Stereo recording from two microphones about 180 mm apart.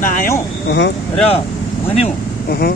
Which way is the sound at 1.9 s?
35° left (ahead or behind).